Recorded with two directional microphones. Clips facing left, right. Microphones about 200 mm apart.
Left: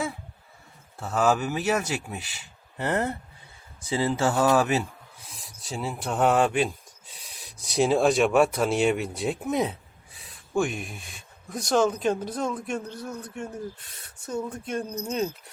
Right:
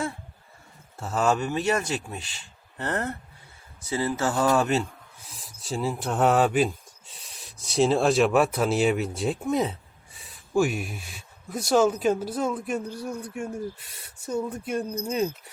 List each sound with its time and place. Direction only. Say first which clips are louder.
0.9 s speech: left 1 dB; centre (ahead or behind)
4.4 s speech: right 2 dB; 5° left (ahead or behind)